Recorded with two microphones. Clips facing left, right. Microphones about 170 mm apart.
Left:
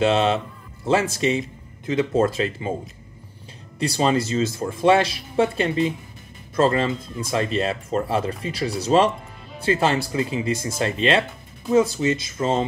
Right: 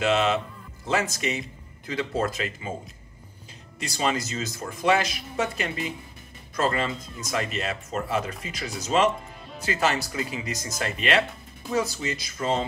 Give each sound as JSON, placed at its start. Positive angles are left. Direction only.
{"t": 0.0, "sound": "speech", "side_deg": 30}
{"t": 3.8, "sound": "speech", "side_deg": 30}